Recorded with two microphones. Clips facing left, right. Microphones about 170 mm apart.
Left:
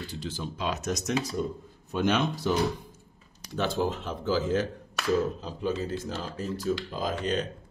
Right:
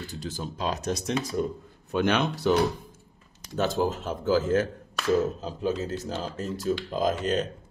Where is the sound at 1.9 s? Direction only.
65° right (ahead or behind).